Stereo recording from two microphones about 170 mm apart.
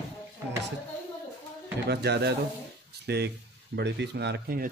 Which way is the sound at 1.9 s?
75° right (ahead or behind).